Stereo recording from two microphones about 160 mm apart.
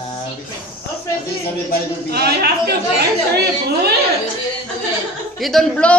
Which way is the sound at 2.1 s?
85° right.